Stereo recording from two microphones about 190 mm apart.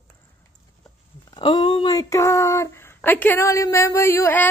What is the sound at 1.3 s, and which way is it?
Speech, 25° left (ahead or behind).